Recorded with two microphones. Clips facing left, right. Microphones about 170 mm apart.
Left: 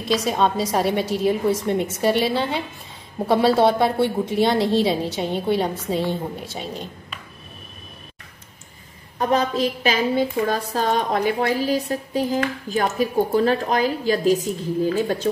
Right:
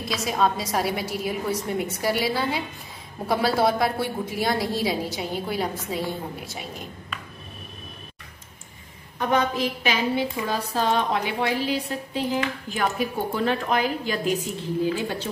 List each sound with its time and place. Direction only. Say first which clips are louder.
0.1 s a woman's voice: left 4 dB; 30° left (ahead or behind)
9.2 s a woman's voice: left 3 dB; 35° left (ahead or behind)
10.1 s a woman's voice: left 5 dB; 50° left (ahead or behind)